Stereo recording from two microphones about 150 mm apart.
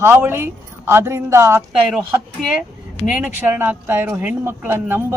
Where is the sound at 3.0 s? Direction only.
10° right (ahead or behind).